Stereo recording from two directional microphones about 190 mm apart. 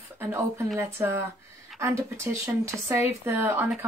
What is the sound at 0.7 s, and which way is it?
Speech, 10° right (ahead or behind).